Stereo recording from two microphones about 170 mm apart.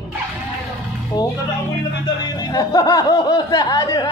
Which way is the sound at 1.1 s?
20° left (ahead or behind).